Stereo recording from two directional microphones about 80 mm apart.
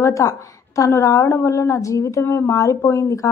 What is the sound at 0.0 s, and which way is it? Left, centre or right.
A woman's voice, left.